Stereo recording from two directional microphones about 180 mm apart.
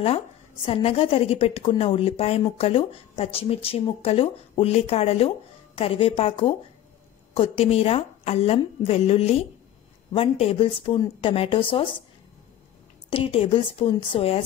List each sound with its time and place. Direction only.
0.7 s a woman's voice: 30° left (ahead or behind)
13.1 s a woman's voice: 30° left (ahead or behind)